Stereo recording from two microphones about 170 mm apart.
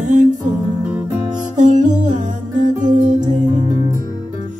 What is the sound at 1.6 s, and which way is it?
Music, 50° right (ahead or behind).